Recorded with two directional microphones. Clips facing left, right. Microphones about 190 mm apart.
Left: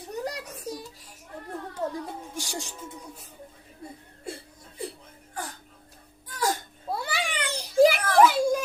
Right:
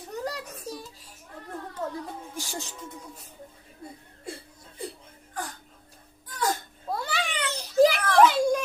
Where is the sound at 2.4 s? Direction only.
15° left (ahead or behind).